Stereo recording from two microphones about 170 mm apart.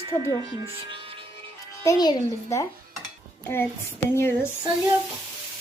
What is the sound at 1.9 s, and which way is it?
Speech, 20° left (ahead or behind).